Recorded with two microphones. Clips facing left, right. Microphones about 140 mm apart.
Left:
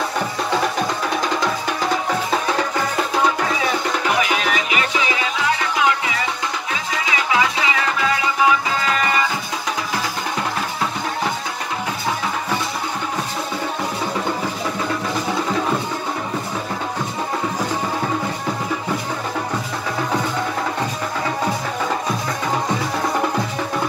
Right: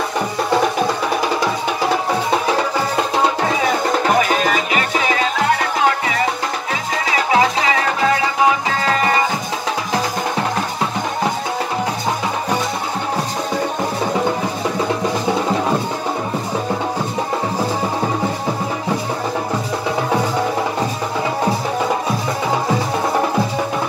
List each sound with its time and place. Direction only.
4.0 s music: 45° right (ahead or behind)
7.2 s music: 40° right (ahead or behind)